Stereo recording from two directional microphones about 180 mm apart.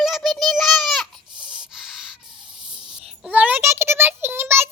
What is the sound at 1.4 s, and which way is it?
Sanding, 5° right (ahead or behind).